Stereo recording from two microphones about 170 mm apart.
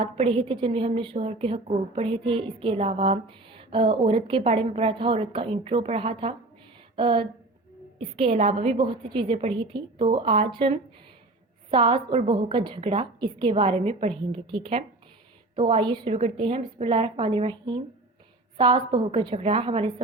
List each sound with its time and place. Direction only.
0.0 s a woman's voice: 35° right (ahead or behind)